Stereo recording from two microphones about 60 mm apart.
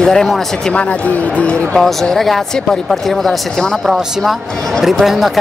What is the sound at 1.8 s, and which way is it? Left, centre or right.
Speech, centre.